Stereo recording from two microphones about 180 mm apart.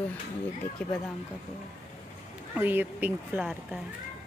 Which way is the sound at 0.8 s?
10° left (ahead or behind).